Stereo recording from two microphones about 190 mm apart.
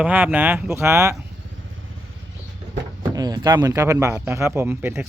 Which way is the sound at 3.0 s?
20° right (ahead or behind).